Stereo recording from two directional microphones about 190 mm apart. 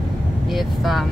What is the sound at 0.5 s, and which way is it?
Speech, centre (ahead or behind).